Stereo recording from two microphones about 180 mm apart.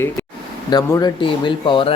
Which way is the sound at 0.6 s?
20° left (ahead or behind).